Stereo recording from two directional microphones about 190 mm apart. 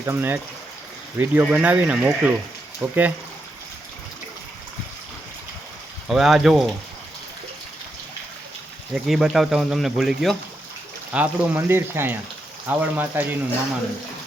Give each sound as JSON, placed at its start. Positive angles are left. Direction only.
{"t": 0.0, "sound": "speech", "side_deg": -10}
{"t": 6.1, "sound": "speech", "side_deg": 0}
{"t": 9.0, "sound": "speech", "side_deg": 0}